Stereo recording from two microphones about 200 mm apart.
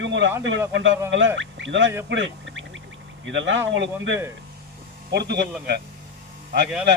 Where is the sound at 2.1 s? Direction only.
70° right (ahead or behind).